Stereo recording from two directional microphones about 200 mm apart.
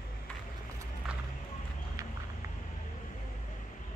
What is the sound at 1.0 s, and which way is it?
Music, centre (ahead or behind).